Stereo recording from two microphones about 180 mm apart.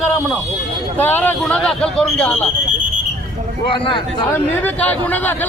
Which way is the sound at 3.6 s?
30° left (ahead or behind).